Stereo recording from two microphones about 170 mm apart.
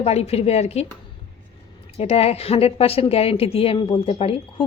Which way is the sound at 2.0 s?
35° left (ahead or behind).